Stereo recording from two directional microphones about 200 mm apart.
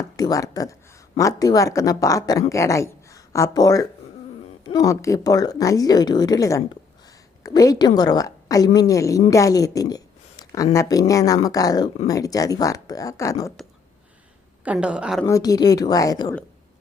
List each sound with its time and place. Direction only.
0.2 s speech: 15° left (ahead or behind)
14.6 s a woman's voice: 5° right (ahead or behind)
15.2 s speech: 20° left (ahead or behind)